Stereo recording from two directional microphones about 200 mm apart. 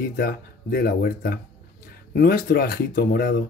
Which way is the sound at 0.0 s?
50° left (ahead or behind).